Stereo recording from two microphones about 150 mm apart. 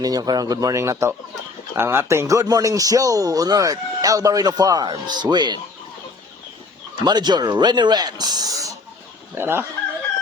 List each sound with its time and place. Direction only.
0.0 s speech: 25° right (ahead or behind)
7.0 s speech: 30° right (ahead or behind)